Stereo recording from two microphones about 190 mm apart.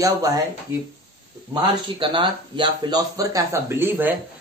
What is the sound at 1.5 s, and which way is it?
Speech, 20° right (ahead or behind).